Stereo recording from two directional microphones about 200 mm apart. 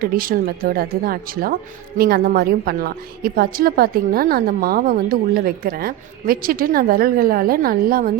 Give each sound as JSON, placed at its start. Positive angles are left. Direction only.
{"t": 0.0, "sound": "a woman's voice", "side_deg": -45}